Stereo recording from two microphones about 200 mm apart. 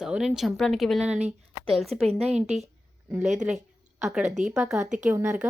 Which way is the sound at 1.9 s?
30° right (ahead or behind).